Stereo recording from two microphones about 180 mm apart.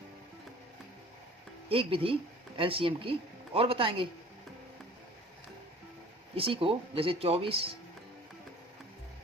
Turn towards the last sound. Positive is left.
turn(degrees=-30)  # may be behind; listen again after turning